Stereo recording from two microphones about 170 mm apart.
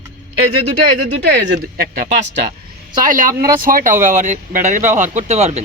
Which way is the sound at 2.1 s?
90° right.